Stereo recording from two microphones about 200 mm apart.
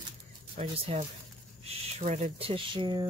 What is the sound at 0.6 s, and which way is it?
Speech, 25° right (ahead or behind).